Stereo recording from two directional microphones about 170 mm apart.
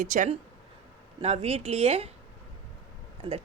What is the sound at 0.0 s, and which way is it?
Speech, 50° right (ahead or behind).